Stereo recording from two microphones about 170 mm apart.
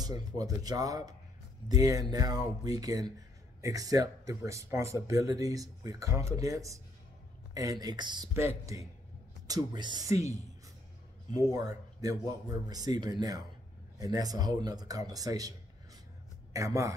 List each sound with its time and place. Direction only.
0.0 s speech: 20° right (ahead or behind)
11.3 s speech: 20° right (ahead or behind)
16.5 s speech: 20° right (ahead or behind)